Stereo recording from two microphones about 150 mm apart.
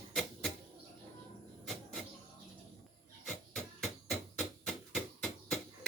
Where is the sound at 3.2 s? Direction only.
Centre (ahead or behind).